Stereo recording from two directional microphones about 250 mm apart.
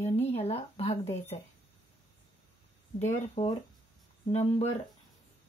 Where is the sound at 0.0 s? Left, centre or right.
Left.